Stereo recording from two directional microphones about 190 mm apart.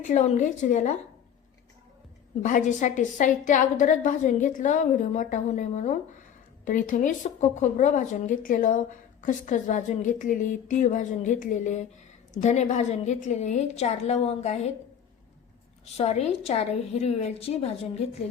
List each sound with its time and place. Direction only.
0.0 s speech: 40° left (ahead or behind)
2.4 s speech: 40° left (ahead or behind)
16.0 s speech: 35° left (ahead or behind)